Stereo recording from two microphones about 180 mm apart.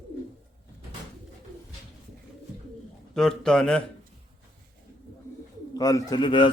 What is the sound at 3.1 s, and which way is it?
Speech, 5° left (ahead or behind).